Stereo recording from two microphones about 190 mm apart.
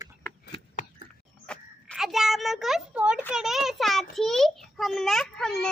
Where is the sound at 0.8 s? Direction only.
40° left (ahead or behind).